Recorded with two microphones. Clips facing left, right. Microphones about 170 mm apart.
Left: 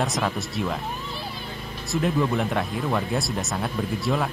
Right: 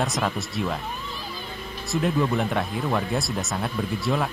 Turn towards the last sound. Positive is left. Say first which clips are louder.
# even
turn(degrees=0)  # may be behind; listen again after turning